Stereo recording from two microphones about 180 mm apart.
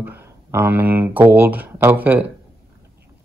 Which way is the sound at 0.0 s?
10° right (ahead or behind).